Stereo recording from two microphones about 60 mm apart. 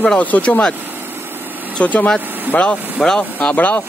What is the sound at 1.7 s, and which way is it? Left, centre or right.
Speech, left.